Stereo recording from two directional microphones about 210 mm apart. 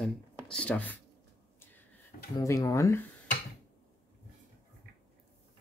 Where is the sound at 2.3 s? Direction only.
15° left (ahead or behind).